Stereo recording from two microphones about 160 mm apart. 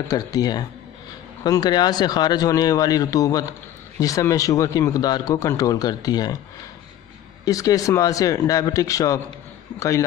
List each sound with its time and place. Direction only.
0.1 s speech: 25° left (ahead or behind)
7.4 s speech: 20° left (ahead or behind)